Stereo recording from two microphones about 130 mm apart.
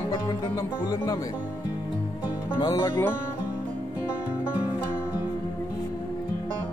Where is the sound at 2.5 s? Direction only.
30° left (ahead or behind).